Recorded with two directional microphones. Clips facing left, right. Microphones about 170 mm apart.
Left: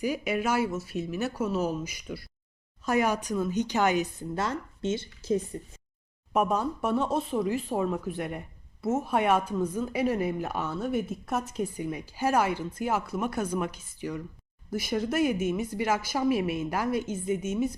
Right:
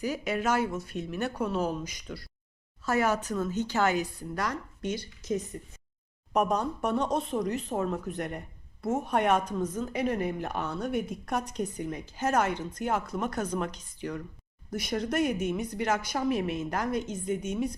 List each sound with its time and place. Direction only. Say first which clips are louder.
0.0 s speech: left 1 dB; 10° left (ahead or behind); by 5.4 s 25° left (ahead or behind)
6.3 s speech: left 1 dB; 5° left (ahead or behind)